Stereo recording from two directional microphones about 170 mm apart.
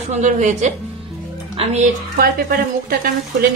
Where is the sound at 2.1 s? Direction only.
60° right (ahead or behind).